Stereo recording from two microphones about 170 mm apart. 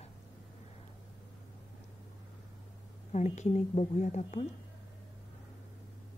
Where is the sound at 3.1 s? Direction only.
45° left (ahead or behind).